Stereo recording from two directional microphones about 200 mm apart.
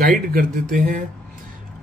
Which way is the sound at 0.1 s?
45° right (ahead or behind).